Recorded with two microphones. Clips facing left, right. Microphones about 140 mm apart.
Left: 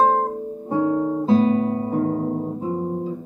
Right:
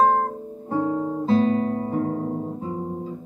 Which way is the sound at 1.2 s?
10° left (ahead or behind).